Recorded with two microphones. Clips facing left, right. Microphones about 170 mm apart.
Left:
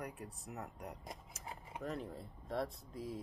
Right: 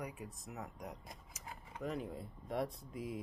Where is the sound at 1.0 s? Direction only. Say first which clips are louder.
Left 3 dB; 25° left (ahead or behind).